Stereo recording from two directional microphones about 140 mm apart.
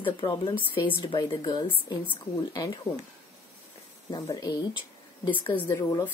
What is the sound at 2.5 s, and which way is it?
Speech, 30° left (ahead or behind).